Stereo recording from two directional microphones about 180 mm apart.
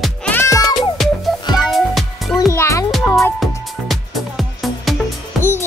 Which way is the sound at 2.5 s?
15° left (ahead or behind).